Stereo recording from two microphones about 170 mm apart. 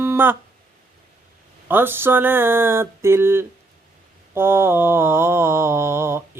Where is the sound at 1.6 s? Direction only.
10° right (ahead or behind).